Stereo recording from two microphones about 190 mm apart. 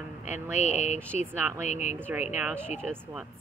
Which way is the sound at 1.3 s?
10° right (ahead or behind).